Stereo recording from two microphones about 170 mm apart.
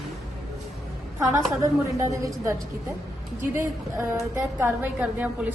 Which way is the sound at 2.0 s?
15° right (ahead or behind).